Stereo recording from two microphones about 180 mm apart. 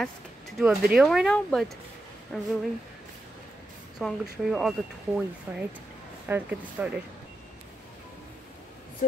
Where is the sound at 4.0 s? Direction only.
Centre (ahead or behind).